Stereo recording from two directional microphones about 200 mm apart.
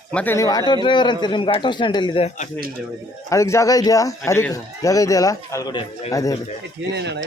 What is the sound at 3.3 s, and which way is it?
Speech, 15° left (ahead or behind).